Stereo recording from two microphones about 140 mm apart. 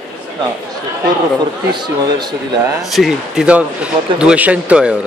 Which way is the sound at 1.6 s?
30° right (ahead or behind).